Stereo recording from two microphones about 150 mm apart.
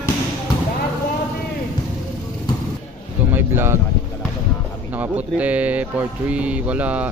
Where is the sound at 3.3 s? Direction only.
15° right (ahead or behind).